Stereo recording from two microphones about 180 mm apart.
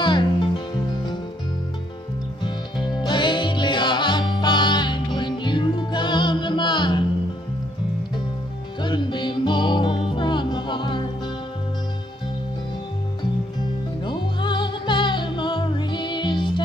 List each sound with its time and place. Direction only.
0.0 s music: 25° left (ahead or behind)
2.4 s music: 25° left (ahead or behind)
8.8 s music: 25° left (ahead or behind)
14.0 s music: 25° left (ahead or behind)